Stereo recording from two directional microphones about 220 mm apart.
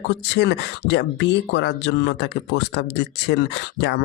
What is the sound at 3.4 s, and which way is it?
Speech, 50° left (ahead or behind).